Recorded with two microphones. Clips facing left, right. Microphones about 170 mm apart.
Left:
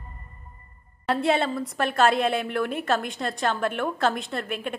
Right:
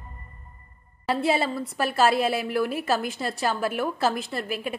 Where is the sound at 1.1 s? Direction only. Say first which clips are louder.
Left 1 dB; 5° right (ahead or behind).